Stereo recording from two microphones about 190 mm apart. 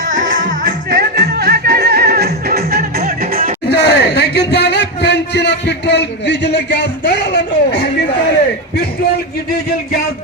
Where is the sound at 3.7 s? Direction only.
60° left (ahead or behind).